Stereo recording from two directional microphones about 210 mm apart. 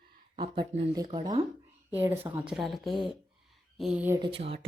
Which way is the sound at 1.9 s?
10° right (ahead or behind).